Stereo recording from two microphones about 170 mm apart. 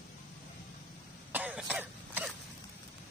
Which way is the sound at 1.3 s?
10° right (ahead or behind).